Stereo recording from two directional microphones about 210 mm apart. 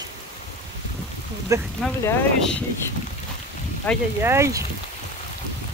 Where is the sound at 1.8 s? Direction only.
5° left (ahead or behind).